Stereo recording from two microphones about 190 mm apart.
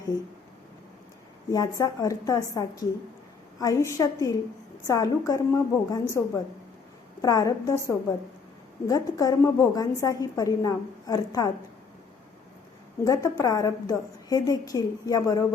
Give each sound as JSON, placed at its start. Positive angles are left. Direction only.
{"t": 1.5, "sound": "a woman's voice", "side_deg": 20}
{"t": 13.1, "sound": "a woman's voice", "side_deg": 20}